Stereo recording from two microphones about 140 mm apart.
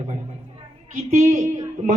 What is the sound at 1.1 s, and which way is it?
Speech, 55° right (ahead or behind).